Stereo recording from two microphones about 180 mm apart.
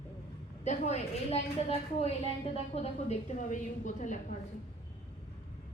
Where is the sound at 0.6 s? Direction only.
40° left (ahead or behind).